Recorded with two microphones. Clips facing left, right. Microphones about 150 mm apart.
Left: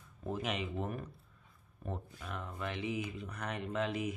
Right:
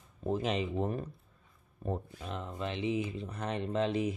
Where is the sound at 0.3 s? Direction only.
30° right (ahead or behind).